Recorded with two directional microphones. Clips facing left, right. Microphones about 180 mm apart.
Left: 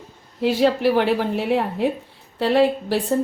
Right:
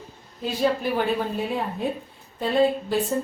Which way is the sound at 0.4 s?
80° left.